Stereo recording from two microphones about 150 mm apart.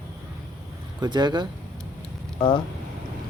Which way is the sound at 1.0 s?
30° right (ahead or behind).